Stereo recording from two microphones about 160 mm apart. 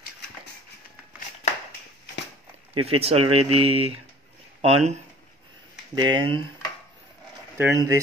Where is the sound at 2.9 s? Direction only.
40° right (ahead or behind).